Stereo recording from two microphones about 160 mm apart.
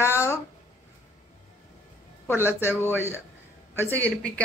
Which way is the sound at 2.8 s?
15° left (ahead or behind).